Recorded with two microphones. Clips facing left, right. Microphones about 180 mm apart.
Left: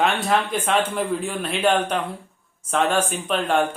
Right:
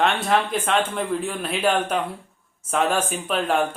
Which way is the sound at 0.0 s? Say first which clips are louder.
Even; centre (ahead or behind).